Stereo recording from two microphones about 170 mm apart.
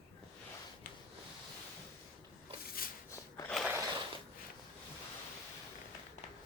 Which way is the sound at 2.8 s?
60° left (ahead or behind).